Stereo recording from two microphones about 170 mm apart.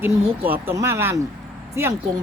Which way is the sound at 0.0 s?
10° right (ahead or behind).